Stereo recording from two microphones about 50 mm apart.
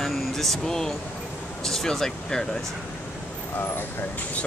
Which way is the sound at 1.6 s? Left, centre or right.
Centre.